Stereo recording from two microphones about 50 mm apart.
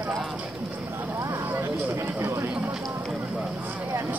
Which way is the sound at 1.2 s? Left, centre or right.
Right.